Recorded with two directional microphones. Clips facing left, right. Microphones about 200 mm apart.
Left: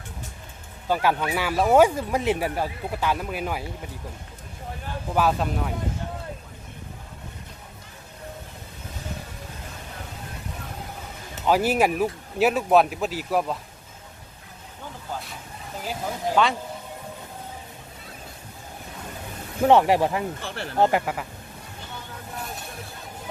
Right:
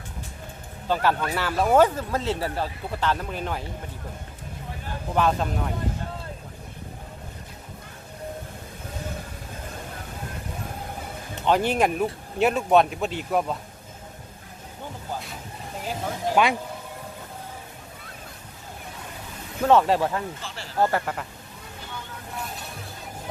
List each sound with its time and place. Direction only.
0.9 s speech: 10° left (ahead or behind)
5.1 s speech: 5° left (ahead or behind)
11.4 s speech: 5° left (ahead or behind)
16.3 s speech: 15° right (ahead or behind)
19.6 s speech: 15° left (ahead or behind)
20.4 s speech: 60° left (ahead or behind)
20.7 s speech: 20° left (ahead or behind)
21.0 s speech: 5° left (ahead or behind)